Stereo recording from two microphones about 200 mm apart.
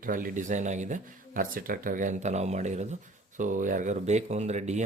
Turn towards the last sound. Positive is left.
turn(degrees=-35)  # may be behind; listen again after turning